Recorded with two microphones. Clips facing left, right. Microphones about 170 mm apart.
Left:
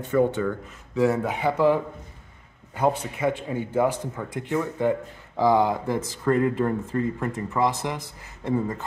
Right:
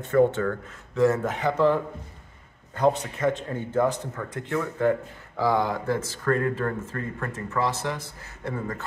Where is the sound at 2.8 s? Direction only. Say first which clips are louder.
Right 1 dB; 10° left (ahead or behind).